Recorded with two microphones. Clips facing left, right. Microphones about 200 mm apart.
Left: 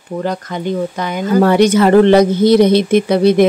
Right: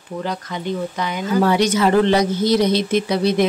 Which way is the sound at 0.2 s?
50° left (ahead or behind).